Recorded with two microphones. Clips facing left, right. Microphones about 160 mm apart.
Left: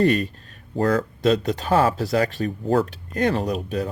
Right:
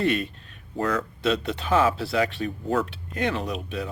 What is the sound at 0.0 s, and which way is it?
Speech, 40° left (ahead or behind).